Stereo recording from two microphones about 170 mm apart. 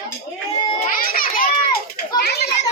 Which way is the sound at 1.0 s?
60° left (ahead or behind).